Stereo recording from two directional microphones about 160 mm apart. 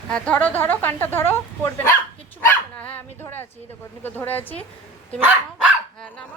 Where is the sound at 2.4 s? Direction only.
10° left (ahead or behind).